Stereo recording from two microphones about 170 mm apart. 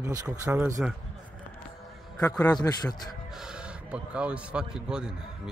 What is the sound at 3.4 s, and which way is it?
A man's voice, 5° right (ahead or behind).